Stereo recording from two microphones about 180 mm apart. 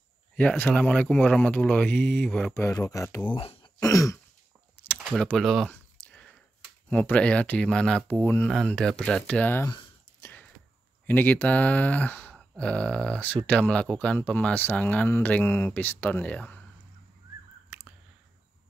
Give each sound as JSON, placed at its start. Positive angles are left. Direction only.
{"t": 0.4, "sound": "speech", "side_deg": 5}
{"t": 2.5, "sound": "speech", "side_deg": 20}
{"t": 3.3, "sound": "speech", "side_deg": 30}
{"t": 4.9, "sound": "a sound", "side_deg": -5}
{"t": 6.9, "sound": "speech", "side_deg": 10}
{"t": 10.2, "sound": "a sound", "side_deg": 10}
{"t": 11.1, "sound": "speech", "side_deg": 10}
{"t": 17.6, "sound": "chewing", "side_deg": -5}